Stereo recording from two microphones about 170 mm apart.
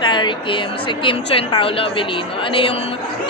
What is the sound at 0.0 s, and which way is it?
A woman's voice, 25° left (ahead or behind).